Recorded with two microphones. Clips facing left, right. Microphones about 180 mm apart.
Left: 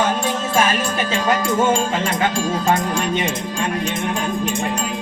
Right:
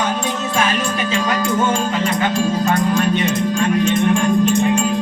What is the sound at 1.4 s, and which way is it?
Speech, 25° left (ahead or behind).